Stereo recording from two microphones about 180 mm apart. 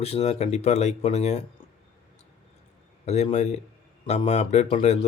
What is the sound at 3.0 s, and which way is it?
Speech, 35° left (ahead or behind).